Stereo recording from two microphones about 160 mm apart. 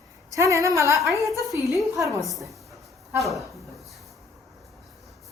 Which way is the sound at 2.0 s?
Centre (ahead or behind).